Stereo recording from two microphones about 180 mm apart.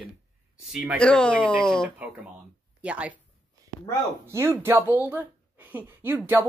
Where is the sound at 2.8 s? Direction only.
5° right (ahead or behind).